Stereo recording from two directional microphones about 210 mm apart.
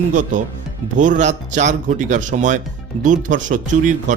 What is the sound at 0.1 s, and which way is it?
Speech, 35° right (ahead or behind).